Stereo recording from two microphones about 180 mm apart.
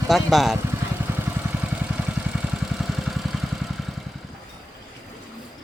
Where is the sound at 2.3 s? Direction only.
Centre (ahead or behind).